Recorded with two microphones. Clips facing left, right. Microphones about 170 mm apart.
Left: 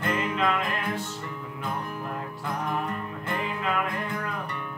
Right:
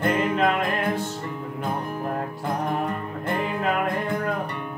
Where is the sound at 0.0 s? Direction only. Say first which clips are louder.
Right 5 dB; 35° right (ahead or behind).